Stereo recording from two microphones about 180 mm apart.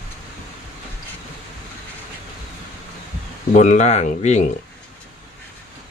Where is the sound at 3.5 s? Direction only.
40° left (ahead or behind).